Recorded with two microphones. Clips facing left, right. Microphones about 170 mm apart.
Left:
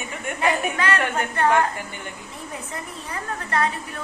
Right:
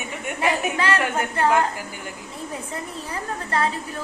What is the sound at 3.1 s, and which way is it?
Speech, 30° right (ahead or behind).